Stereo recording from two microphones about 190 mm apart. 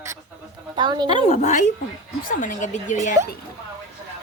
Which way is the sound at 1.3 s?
40° left (ahead or behind).